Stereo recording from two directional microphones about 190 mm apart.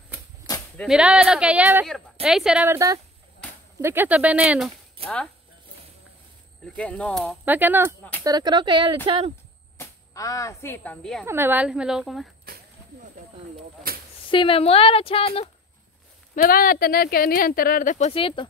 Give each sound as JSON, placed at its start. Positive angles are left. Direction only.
{"t": 0.7, "sound": "speech", "side_deg": -5}
{"t": 6.6, "sound": "speech", "side_deg": 5}
{"t": 7.4, "sound": "speech", "side_deg": -10}
{"t": 8.2, "sound": "speech", "side_deg": -20}
{"t": 9.8, "sound": "speech", "side_deg": 15}
{"t": 11.2, "sound": "speech", "side_deg": -10}
{"t": 13.9, "sound": "a sound", "side_deg": -50}
{"t": 14.3, "sound": "speech", "side_deg": 25}
{"t": 16.3, "sound": "speech", "side_deg": 50}